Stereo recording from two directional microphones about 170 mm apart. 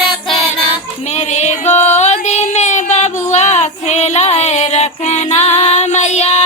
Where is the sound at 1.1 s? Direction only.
40° left (ahead or behind).